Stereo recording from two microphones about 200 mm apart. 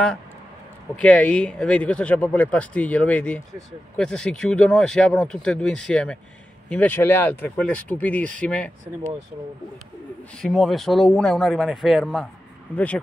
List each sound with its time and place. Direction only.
1.0 s speech: 5° left (ahead or behind)
10.3 s speech: centre (ahead or behind)